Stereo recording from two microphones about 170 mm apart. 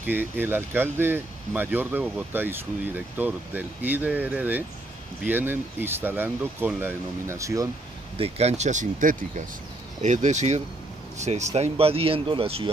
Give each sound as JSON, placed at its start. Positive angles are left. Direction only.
{"t": 0.0, "sound": "speech", "side_deg": -10}
{"t": 8.2, "sound": "speech", "side_deg": -40}